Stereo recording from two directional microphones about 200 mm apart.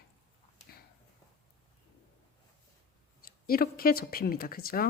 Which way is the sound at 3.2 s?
45° left (ahead or behind).